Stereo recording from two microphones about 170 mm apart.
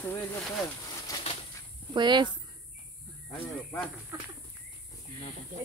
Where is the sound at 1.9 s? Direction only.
25° right (ahead or behind).